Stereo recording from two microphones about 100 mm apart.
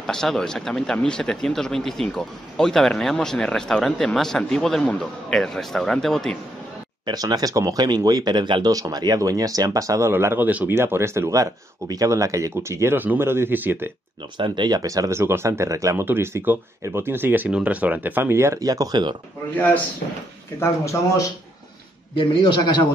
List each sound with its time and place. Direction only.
0.0 s speech: 5° left (ahead or behind)
7.1 s speech: 40° right (ahead or behind)
8.7 s speech: 40° right (ahead or behind); by 13.9 s 20° right (ahead or behind)
14.3 s speech: 50° right (ahead or behind)
20.5 s speech: 30° left (ahead or behind)
22.1 s a man's voice: 50° left (ahead or behind)